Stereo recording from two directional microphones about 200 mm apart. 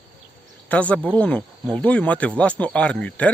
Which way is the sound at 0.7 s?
5° left (ahead or behind).